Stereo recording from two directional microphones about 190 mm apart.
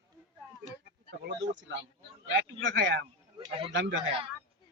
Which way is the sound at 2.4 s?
75° right (ahead or behind).